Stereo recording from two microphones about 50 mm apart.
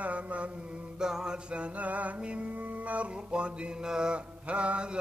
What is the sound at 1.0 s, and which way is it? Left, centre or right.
Mantra, centre.